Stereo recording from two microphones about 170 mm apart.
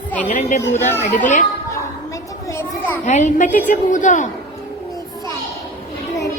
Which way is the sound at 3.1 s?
45° left (ahead or behind).